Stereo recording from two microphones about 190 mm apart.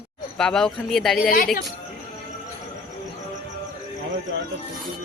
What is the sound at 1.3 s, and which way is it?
Speech, 45° left (ahead or behind).